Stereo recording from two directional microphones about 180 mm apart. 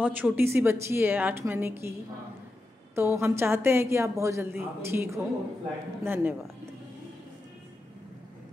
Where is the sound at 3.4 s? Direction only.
15° right (ahead or behind).